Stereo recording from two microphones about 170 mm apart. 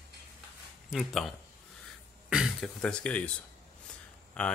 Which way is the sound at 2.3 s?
Centre (ahead or behind).